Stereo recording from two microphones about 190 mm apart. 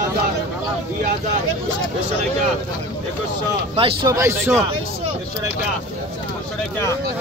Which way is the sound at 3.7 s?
30° right (ahead or behind).